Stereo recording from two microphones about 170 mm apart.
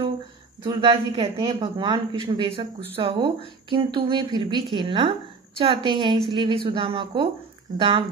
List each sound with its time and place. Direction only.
0.7 s a woman's voice: 25° right (ahead or behind)